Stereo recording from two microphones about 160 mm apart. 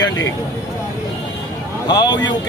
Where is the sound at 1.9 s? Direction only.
25° left (ahead or behind).